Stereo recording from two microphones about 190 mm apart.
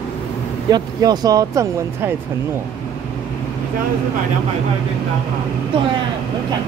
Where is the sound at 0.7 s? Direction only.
20° right (ahead or behind).